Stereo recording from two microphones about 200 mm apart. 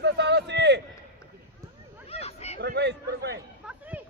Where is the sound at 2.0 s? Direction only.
30° left (ahead or behind).